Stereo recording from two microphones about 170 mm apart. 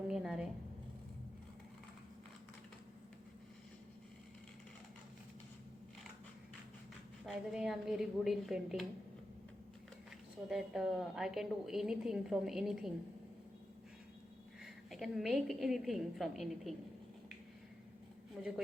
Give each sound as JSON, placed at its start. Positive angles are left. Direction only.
{"t": 0.1, "sound": "a sound", "side_deg": -5}
{"t": 7.3, "sound": "a woman's voice", "side_deg": 0}
{"t": 10.5, "sound": "a woman's voice", "side_deg": -5}
{"t": 14.6, "sound": "a woman's voice", "side_deg": 0}
{"t": 18.4, "sound": "a woman's voice", "side_deg": -5}